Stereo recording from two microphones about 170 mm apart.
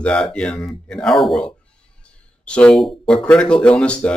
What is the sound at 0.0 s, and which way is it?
Speech, 5° left (ahead or behind).